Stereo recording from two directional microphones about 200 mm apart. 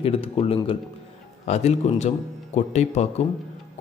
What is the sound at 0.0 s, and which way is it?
Speech, 30° left (ahead or behind).